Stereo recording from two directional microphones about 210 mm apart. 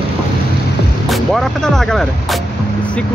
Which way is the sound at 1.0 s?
Centre (ahead or behind).